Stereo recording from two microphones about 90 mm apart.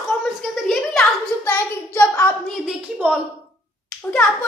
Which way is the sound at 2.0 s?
25° left (ahead or behind).